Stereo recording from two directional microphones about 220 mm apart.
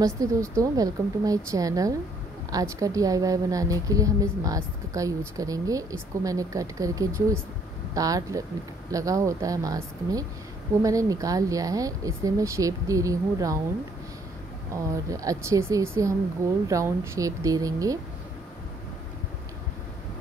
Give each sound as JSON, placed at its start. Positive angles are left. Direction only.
{"t": 0.0, "sound": "a woman's voice", "side_deg": -15}
{"t": 14.7, "sound": "a woman's voice", "side_deg": -15}